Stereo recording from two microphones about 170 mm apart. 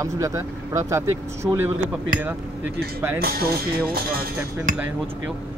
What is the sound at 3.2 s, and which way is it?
Speech, 65° right (ahead or behind).